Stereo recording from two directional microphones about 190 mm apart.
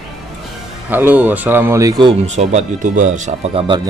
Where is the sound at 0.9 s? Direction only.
10° right (ahead or behind).